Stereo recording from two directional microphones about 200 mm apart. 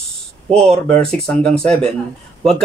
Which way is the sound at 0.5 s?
30° right (ahead or behind).